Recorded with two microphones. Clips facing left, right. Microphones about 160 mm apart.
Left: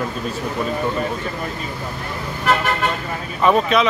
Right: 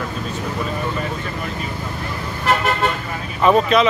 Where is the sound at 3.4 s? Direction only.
Centre (ahead or behind).